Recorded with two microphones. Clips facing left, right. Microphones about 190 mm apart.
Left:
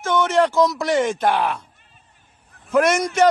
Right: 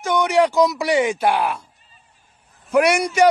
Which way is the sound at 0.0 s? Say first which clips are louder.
Right 1 dB; 15° right (ahead or behind).